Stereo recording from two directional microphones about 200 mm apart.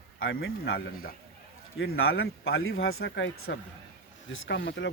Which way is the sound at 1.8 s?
90° left.